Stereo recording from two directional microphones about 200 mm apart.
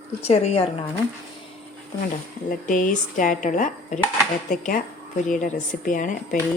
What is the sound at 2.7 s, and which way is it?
Speech, 40° left (ahead or behind).